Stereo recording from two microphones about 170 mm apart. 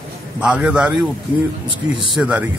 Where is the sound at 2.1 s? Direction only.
5° right (ahead or behind).